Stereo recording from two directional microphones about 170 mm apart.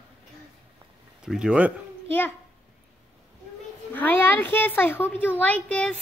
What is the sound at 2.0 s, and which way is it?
Speech, 15° left (ahead or behind).